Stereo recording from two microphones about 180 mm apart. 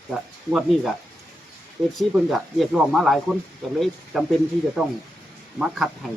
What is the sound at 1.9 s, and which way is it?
Speech, centre (ahead or behind).